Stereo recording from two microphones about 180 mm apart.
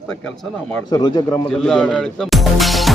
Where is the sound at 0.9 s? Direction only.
20° left (ahead or behind).